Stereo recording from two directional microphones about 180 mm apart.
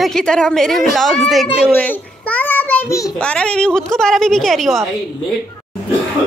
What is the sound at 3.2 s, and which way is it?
A woman's voice, 5° left (ahead or behind).